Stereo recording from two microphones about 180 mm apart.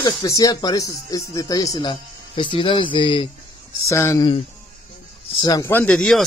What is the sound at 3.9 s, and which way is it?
Speech, 15° left (ahead or behind).